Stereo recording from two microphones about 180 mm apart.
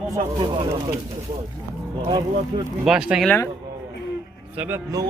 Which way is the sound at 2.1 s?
25° right (ahead or behind).